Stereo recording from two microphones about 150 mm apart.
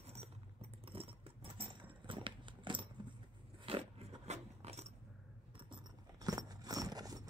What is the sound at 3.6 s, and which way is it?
Biting, 40° right (ahead or behind).